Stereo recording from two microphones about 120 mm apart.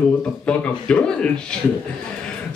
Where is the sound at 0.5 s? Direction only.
10° left (ahead or behind).